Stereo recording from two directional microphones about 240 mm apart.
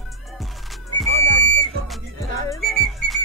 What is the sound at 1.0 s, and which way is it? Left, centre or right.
Music, right.